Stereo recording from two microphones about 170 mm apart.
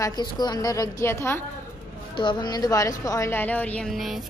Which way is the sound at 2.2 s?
25° left (ahead or behind).